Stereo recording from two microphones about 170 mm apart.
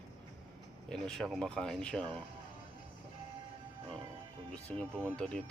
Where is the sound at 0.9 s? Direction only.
5° left (ahead or behind).